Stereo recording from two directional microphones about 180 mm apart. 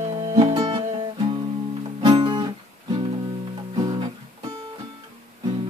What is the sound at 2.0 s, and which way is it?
Guitar, 25° right (ahead or behind).